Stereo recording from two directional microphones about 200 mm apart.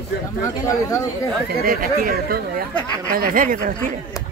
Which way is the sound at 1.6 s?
45° right (ahead or behind).